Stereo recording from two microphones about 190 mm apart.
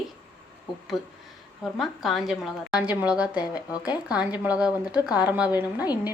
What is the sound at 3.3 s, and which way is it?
Speech, 20° left (ahead or behind).